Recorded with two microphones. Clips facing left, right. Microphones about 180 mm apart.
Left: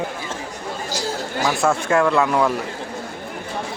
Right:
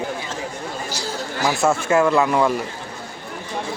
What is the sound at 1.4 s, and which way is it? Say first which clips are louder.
Speech: right 1 dB; 5° right (ahead or behind).